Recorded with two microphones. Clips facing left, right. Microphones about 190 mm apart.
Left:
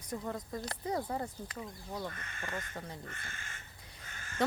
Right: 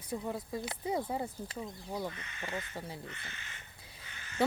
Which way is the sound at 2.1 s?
50° left (ahead or behind).